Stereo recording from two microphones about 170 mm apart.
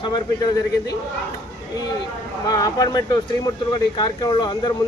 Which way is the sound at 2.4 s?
20° left (ahead or behind).